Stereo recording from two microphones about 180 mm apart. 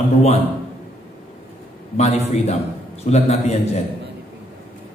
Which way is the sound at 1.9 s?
35° left (ahead or behind).